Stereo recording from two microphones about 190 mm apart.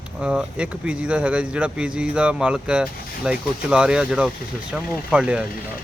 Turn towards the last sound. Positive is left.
turn(degrees=-5)  # may be behind; listen again after turning